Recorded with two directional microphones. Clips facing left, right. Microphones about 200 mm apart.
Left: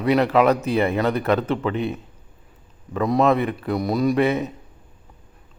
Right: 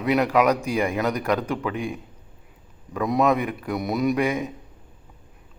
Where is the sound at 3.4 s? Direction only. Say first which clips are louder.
Left 4 dB; 5° right (ahead or behind).